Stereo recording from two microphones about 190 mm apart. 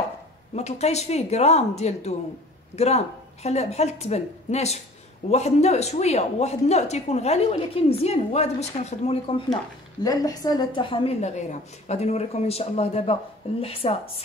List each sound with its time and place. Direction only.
0.6 s a woman's voice: 35° left (ahead or behind)
10.0 s a woman's voice: 20° left (ahead or behind)